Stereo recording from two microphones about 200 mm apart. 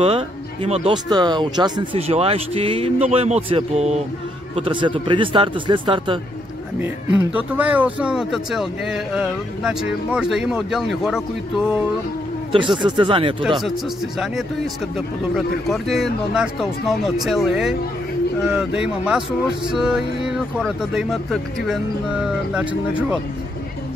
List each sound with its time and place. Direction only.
0.0 s speech: 30° right (ahead or behind)
6.8 s speech: 10° right (ahead or behind)
12.7 s speech: 25° right (ahead or behind)
15.0 s speech: centre (ahead or behind)